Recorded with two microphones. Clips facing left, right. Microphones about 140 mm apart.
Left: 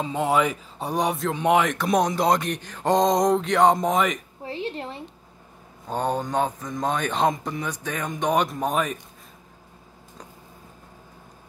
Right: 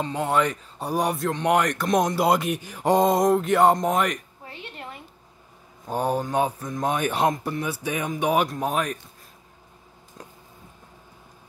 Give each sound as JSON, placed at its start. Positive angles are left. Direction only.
{"t": 0.0, "sound": "speech", "side_deg": 0}
{"t": 4.5, "sound": "a sound", "side_deg": 30}
{"t": 5.9, "sound": "speech", "side_deg": -10}